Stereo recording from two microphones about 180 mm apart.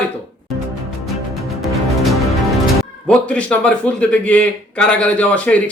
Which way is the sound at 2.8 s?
5° left (ahead or behind).